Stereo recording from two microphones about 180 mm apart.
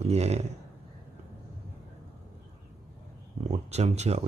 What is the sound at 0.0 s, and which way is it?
Speech, 35° right (ahead or behind).